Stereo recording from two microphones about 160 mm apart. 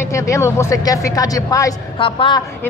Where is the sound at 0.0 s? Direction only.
20° left (ahead or behind).